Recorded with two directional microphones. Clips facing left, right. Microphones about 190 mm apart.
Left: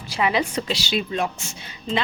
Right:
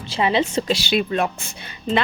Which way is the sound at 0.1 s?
25° right (ahead or behind).